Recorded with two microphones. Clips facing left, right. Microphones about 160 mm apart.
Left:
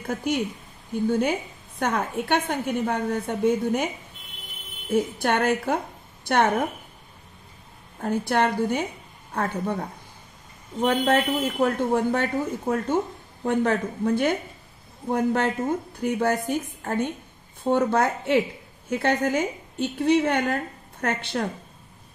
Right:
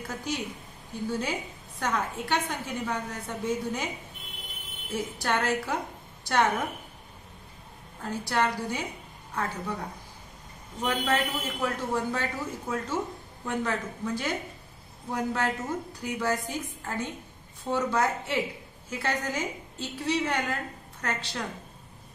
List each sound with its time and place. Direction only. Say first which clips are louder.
0.0 s a woman's voice: left 7 dB; 55° left (ahead or behind)
4.9 s speech: left 7 dB; 55° left (ahead or behind)
8.0 s a woman's voice: left 5 dB; 55° left (ahead or behind)